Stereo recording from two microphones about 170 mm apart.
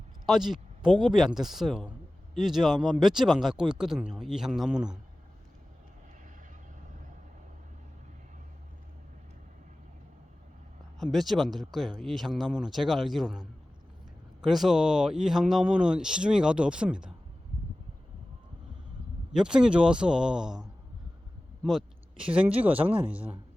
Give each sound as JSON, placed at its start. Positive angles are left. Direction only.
{"t": 0.3, "sound": "speech", "side_deg": 0}
{"t": 11.0, "sound": "speech", "side_deg": 0}
{"t": 19.3, "sound": "speech", "side_deg": -5}